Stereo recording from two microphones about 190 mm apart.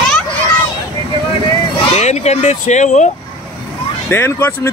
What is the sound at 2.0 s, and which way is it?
Speech, 35° left (ahead or behind).